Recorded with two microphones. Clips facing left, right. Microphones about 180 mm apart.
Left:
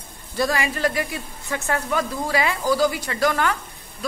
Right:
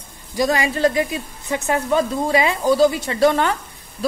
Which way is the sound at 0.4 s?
20° right (ahead or behind).